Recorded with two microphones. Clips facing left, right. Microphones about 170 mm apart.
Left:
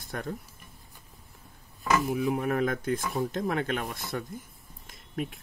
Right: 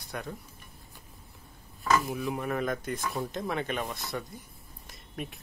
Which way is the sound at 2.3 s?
55° left (ahead or behind).